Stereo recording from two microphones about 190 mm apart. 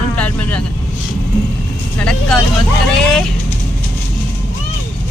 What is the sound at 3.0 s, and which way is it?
Speech, 5° left (ahead or behind).